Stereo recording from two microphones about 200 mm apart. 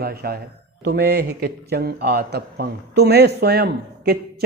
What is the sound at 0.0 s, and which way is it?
A man's voice, 50° right (ahead or behind).